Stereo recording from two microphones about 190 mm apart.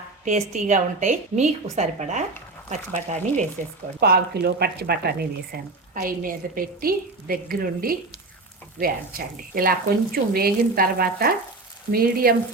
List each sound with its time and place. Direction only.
0.3 s a woman's voice: 40° right (ahead or behind)
4.0 s speech: 55° right (ahead or behind)
5.9 s speech: 45° right (ahead or behind)